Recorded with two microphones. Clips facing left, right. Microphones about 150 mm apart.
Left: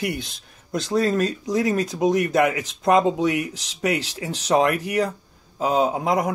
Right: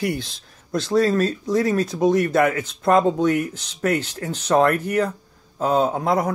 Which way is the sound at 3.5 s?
90° left.